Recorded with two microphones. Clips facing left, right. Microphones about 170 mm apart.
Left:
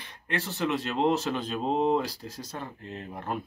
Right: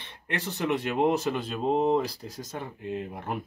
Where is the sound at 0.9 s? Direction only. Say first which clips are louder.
Right 2 dB; 15° right (ahead or behind).